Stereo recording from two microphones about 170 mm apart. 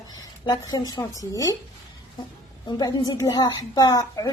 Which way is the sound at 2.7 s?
25° left (ahead or behind).